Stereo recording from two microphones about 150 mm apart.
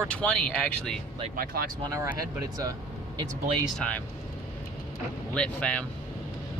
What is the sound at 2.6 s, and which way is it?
Speech, 25° right (ahead or behind).